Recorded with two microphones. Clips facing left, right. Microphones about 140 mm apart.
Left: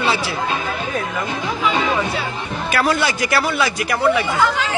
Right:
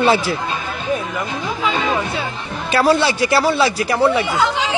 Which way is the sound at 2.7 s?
30° right (ahead or behind).